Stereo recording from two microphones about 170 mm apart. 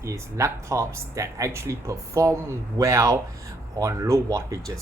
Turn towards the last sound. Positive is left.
turn(degrees=-20)  # may be behind; listen again after turning